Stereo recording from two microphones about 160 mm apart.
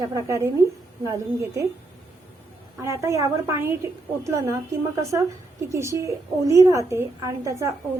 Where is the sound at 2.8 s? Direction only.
20° right (ahead or behind).